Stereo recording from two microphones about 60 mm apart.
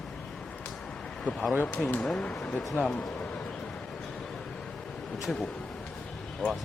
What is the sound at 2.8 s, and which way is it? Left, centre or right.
Speech, centre.